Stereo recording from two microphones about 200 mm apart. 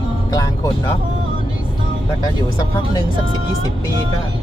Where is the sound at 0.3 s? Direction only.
20° left (ahead or behind).